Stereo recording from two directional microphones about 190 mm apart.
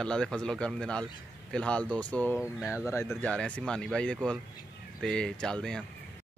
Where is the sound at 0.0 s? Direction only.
5° left (ahead or behind).